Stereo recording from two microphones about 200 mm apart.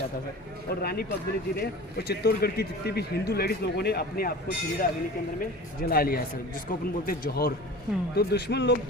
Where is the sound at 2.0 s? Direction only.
55° left (ahead or behind).